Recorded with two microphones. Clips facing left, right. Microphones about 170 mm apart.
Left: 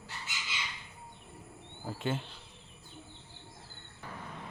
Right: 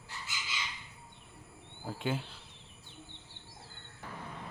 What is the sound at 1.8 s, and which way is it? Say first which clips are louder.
Speech: even; centre (ahead or behind).